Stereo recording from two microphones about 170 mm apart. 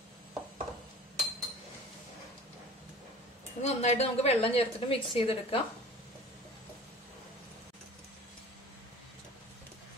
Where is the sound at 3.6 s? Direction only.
40° left (ahead or behind).